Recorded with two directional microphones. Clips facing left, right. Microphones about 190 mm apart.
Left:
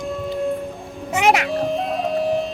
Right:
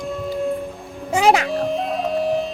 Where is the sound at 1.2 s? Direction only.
30° right (ahead or behind).